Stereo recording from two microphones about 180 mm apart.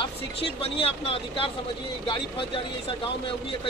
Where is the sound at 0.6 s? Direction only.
30° left (ahead or behind).